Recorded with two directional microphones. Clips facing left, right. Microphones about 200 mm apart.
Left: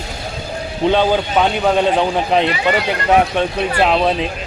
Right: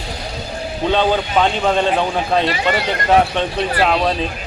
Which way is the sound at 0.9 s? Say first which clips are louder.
Left 2 dB; 10° left (ahead or behind).